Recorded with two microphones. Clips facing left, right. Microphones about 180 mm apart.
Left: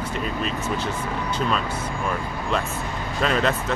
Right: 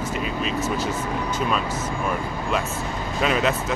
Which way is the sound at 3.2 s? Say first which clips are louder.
Even; 5° right (ahead or behind).